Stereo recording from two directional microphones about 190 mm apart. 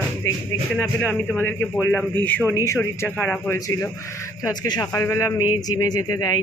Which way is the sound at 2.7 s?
10° left (ahead or behind).